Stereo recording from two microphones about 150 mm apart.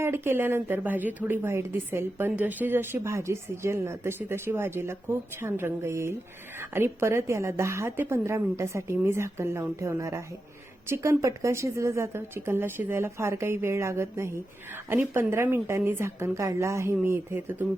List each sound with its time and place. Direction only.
0.0 s a woman's voice: 15° right (ahead or behind)